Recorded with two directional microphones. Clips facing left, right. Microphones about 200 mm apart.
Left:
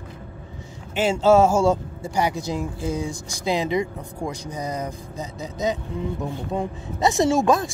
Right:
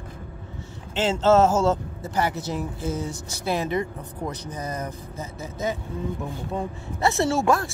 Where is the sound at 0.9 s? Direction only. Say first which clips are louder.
Left 2 dB; 10° left (ahead or behind).